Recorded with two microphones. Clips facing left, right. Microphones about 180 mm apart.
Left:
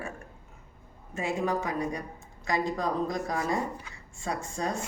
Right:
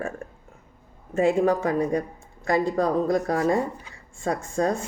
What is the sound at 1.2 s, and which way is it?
A woman's voice, 55° right (ahead or behind).